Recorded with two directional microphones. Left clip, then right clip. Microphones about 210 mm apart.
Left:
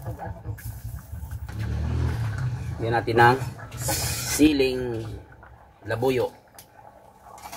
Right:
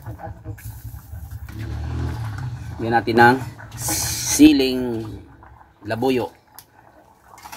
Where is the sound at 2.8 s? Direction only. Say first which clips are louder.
Right 4 dB; 45° right (ahead or behind).